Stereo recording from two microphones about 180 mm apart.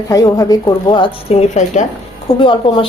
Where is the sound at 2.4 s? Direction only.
30° left (ahead or behind).